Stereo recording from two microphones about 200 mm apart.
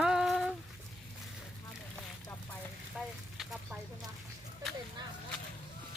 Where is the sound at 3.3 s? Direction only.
Centre (ahead or behind).